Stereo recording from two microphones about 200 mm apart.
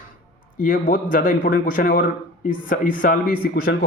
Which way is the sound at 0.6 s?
45° left (ahead or behind).